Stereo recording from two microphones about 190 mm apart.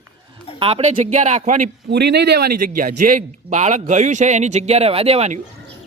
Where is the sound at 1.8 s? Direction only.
60° right (ahead or behind).